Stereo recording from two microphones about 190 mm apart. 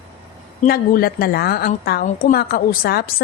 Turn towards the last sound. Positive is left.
turn(degrees=55)  # may be behind; listen again after turning